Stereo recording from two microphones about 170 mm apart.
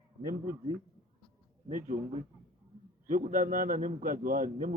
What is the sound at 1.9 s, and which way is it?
Speech, 65° right (ahead or behind).